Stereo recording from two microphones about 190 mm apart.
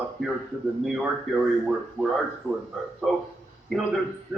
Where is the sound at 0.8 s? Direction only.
5° right (ahead or behind).